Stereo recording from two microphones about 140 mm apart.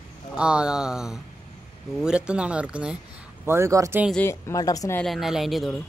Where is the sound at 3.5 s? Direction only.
20° right (ahead or behind).